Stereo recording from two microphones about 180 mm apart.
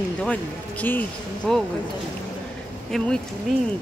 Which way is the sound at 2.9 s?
Centre (ahead or behind).